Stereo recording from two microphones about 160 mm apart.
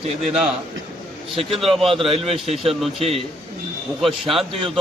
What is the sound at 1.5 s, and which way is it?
Speech, centre (ahead or behind).